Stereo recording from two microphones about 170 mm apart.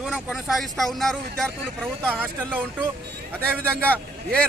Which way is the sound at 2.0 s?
10° right (ahead or behind).